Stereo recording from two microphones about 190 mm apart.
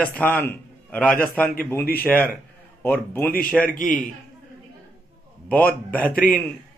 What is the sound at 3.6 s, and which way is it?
Speech, 45° left (ahead or behind).